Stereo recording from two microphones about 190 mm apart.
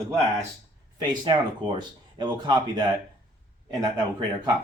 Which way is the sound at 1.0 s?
25° right (ahead or behind).